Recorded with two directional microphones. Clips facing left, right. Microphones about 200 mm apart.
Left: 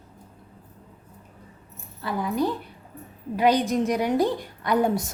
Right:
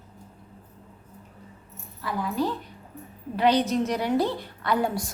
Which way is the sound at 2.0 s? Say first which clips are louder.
Left 2 dB; 20° left (ahead or behind).